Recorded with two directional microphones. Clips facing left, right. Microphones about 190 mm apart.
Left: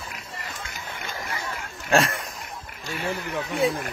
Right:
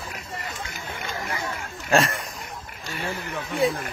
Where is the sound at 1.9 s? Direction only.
Centre (ahead or behind).